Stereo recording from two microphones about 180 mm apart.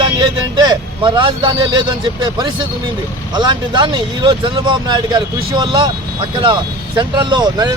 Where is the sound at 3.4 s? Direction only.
25° right (ahead or behind).